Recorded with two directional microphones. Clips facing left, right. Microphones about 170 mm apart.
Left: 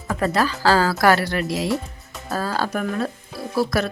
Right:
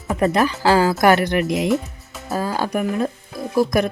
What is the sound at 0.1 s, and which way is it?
Speech, 20° right (ahead or behind).